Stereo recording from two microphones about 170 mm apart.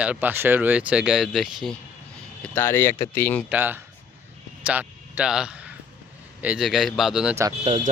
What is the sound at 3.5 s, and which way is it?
Speech, 10° right (ahead or behind).